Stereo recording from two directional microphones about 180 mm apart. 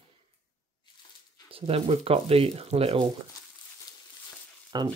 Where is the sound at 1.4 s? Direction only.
30° right (ahead or behind).